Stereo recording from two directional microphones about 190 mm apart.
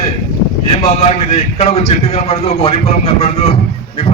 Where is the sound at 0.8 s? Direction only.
35° left (ahead or behind).